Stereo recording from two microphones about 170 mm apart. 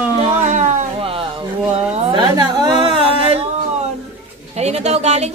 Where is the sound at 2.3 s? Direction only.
25° right (ahead or behind).